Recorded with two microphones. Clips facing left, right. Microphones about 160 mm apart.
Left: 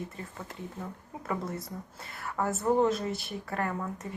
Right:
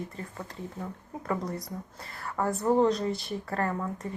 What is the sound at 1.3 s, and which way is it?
A woman's voice, 5° left (ahead or behind).